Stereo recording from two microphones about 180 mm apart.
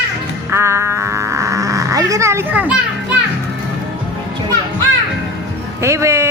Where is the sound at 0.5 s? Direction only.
15° right (ahead or behind).